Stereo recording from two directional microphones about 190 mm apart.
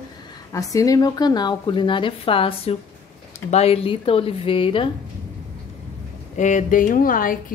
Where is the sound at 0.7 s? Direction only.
20° left (ahead or behind).